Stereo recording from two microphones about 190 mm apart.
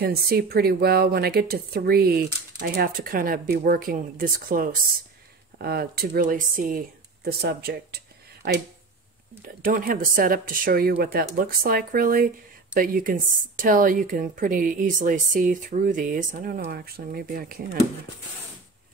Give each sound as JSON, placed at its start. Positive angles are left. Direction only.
{"t": 0.0, "sound": "a woman's voice", "side_deg": -55}